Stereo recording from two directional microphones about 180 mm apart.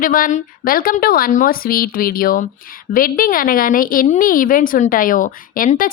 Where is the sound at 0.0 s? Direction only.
50° left (ahead or behind).